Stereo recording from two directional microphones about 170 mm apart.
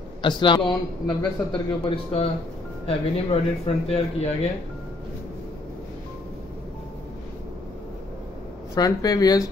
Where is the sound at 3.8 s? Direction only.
40° left (ahead or behind).